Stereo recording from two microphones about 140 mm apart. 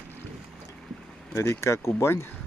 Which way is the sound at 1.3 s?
20° left (ahead or behind).